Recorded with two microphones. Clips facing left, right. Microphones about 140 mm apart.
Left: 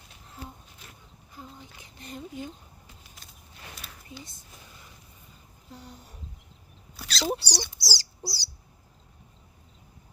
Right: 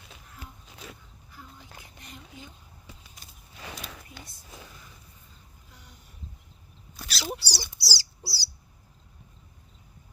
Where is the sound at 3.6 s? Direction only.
90° right.